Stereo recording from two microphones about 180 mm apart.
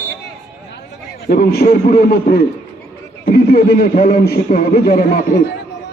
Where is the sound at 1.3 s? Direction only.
55° left (ahead or behind).